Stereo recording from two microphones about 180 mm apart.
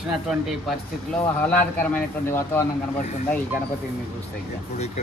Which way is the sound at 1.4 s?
10° left (ahead or behind).